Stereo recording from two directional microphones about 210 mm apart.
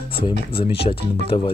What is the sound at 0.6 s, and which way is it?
Speech, 25° left (ahead or behind).